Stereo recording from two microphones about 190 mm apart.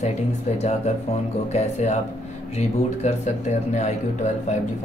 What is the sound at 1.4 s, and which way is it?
Speech, 35° left (ahead or behind).